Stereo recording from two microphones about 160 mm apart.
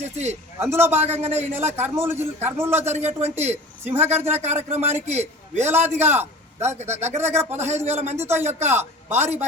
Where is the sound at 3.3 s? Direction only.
15° right (ahead or behind).